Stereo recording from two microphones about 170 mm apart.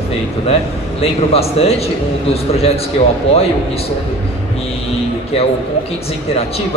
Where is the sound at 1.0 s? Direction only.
35° left (ahead or behind).